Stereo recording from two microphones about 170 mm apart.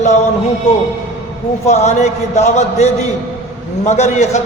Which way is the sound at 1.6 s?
40° left (ahead or behind).